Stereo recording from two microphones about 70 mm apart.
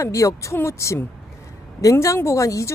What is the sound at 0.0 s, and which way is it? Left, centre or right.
Speech, left.